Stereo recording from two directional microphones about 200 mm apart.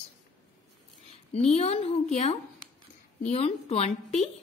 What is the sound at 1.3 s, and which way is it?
A woman's voice, 30° left (ahead or behind).